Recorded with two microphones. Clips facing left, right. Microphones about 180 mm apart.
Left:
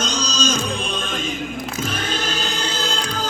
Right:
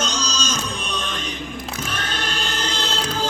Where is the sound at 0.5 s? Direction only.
30° left (ahead or behind).